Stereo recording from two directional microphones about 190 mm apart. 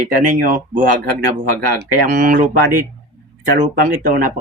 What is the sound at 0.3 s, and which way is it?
Speech, 45° right (ahead or behind).